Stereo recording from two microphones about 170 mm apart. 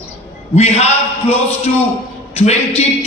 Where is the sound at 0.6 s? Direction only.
40° left (ahead or behind).